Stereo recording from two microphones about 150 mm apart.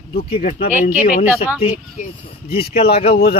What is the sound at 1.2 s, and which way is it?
Speech, 10° right (ahead or behind).